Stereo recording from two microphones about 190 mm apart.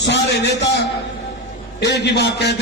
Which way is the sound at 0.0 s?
65° left (ahead or behind).